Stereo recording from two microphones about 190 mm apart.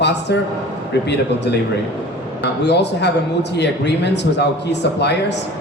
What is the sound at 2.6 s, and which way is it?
A man's voice, 65° left (ahead or behind).